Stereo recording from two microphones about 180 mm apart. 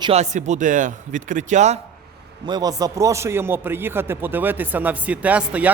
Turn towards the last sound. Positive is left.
turn(degrees=-5)  # may be behind; listen again after turning